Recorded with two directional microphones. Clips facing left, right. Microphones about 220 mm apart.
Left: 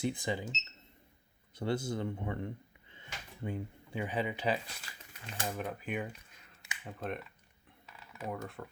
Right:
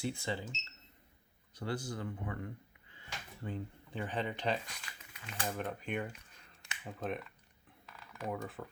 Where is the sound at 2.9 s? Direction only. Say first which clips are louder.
Even; 15° left (ahead or behind).